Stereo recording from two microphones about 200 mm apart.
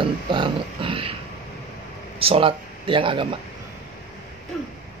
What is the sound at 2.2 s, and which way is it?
Speech, 30° right (ahead or behind).